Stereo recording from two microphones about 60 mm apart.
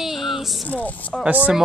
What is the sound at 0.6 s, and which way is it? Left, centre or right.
Speech, left.